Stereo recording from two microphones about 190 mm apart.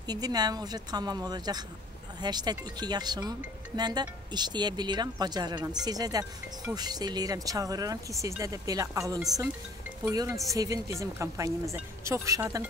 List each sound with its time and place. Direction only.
0.0 s speech: 20° right (ahead or behind)